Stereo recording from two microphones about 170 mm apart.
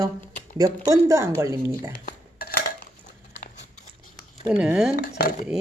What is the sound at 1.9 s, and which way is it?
Dishes, 60° left (ahead or behind).